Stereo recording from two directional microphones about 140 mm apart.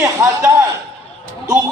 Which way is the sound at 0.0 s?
20° right (ahead or behind).